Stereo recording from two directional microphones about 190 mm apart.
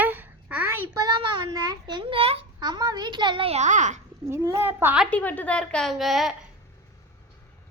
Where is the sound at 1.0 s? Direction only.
25° right (ahead or behind).